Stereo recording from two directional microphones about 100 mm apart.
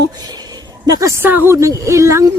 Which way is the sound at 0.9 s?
30° right (ahead or behind).